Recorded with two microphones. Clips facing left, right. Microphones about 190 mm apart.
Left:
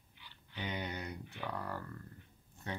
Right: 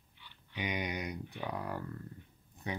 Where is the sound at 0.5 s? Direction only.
15° right (ahead or behind).